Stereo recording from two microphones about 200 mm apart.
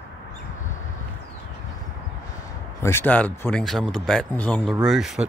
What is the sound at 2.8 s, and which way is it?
Speech, 10° left (ahead or behind).